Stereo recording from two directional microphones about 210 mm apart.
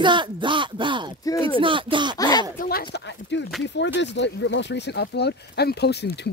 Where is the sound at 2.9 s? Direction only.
55° left (ahead or behind).